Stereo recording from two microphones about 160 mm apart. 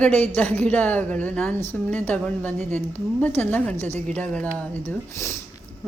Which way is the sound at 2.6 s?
50° right (ahead or behind).